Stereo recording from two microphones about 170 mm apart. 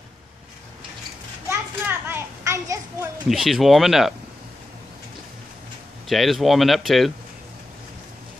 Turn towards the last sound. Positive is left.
turn(degrees=0)  # may be behind; listen again after turning